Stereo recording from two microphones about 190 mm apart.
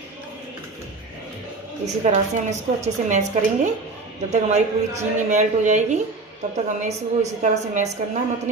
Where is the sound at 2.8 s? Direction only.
40° right (ahead or behind).